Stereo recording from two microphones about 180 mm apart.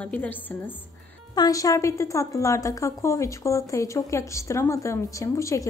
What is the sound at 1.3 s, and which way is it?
A woman's voice, 20° left (ahead or behind).